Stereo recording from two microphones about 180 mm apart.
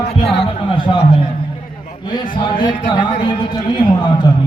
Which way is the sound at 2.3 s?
25° left (ahead or behind).